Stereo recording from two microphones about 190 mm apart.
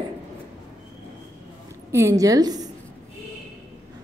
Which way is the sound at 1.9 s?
15° right (ahead or behind).